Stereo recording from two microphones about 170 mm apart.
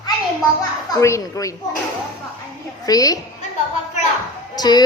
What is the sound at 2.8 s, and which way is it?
Speech, 20° left (ahead or behind).